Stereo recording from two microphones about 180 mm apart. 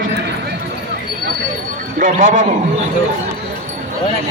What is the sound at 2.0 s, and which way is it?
Speech, 45° right (ahead or behind).